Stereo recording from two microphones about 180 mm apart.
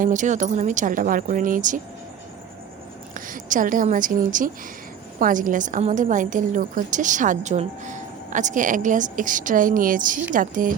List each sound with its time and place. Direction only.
0.0 s a woman's voice: 45° right (ahead or behind)
3.2 s a woman's voice: 50° right (ahead or behind)